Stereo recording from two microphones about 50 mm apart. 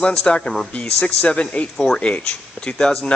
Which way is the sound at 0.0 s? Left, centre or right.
Centre.